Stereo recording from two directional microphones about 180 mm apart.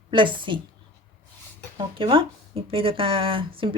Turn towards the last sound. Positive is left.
turn(degrees=-30)  # may be behind; listen again after turning